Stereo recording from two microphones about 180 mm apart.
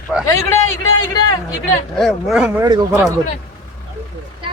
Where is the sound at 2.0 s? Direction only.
Centre (ahead or behind).